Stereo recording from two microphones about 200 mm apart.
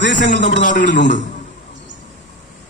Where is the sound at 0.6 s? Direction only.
40° left (ahead or behind).